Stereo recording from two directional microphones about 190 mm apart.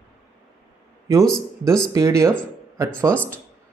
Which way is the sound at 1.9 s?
15° right (ahead or behind).